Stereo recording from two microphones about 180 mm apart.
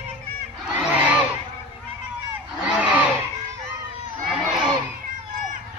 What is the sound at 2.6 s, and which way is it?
Crowd, 5° right (ahead or behind).